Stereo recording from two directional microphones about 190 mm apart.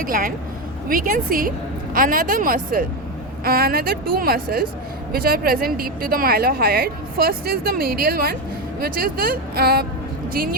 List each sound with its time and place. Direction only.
0.0 s a woman's voice: 50° right (ahead or behind)